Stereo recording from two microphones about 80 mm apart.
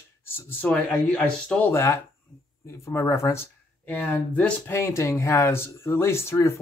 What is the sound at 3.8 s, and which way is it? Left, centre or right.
Speech, centre.